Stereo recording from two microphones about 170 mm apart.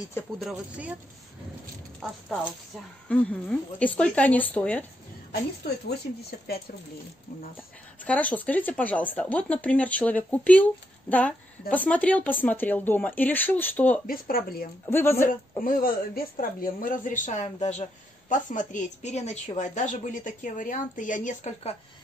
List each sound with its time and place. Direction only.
0.4 s speech: 5° right (ahead or behind)
2.4 s speech: 5° left (ahead or behind)
8.0 s speech: 10° left (ahead or behind)
14.0 s speech: 60° left (ahead or behind)
14.9 s speech: 15° left (ahead or behind)
15.6 s a woman's voice: 55° left (ahead or behind)